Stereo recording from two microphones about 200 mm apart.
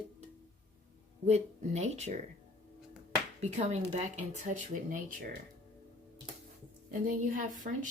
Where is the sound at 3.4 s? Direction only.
35° right (ahead or behind).